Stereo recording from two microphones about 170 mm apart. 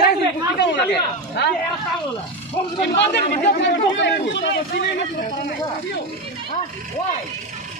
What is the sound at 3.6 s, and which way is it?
Speech, 90° left.